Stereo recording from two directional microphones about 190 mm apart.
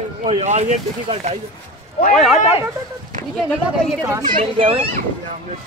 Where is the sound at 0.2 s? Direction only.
35° right (ahead or behind).